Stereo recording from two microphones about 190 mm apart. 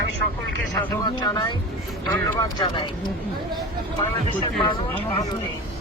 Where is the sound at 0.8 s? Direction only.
20° left (ahead or behind).